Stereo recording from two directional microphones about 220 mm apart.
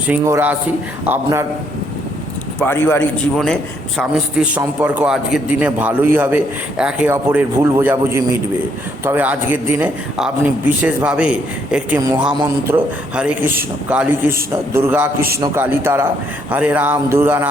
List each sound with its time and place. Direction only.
0.1 s a man's voice: 10° right (ahead or behind)
2.6 s a man's voice: 10° left (ahead or behind); by 17.5 s 10° right (ahead or behind)